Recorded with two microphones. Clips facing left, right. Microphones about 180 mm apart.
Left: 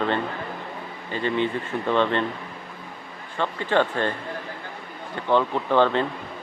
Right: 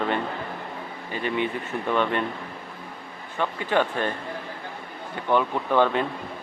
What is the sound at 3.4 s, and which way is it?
Speech, 10° right (ahead or behind).